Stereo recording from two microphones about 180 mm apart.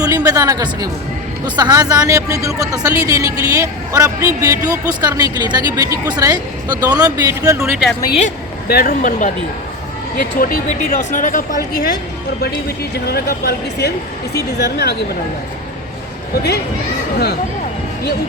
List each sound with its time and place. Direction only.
0.0 s speech: 20° right (ahead or behind)
7.8 s a woman's voice: centre (ahead or behind)
8.6 s speech: 55° left (ahead or behind)
13.1 s speech: 60° left (ahead or behind)
16.3 s speech: 65° left (ahead or behind)